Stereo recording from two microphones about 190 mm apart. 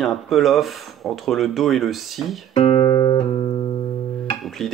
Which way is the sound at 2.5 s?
25° left (ahead or behind).